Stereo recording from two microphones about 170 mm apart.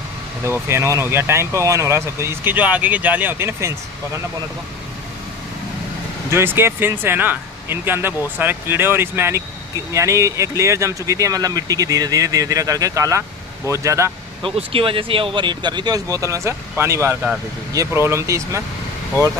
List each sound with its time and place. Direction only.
0.5 s speech: 15° right (ahead or behind)
6.3 s speech: 15° right (ahead or behind)
14.4 s speech: 30° right (ahead or behind); by 18.6 s 15° right (ahead or behind)